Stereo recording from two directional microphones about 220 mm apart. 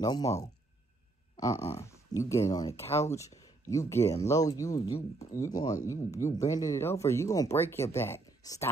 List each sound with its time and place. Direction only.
0.0 s speech: 15° left (ahead or behind)
1.3 s a sound: 15° left (ahead or behind)
1.8 s speech: 15° left (ahead or behind)